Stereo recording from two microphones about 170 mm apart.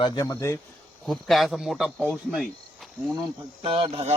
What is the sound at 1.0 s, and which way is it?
Speech, centre (ahead or behind).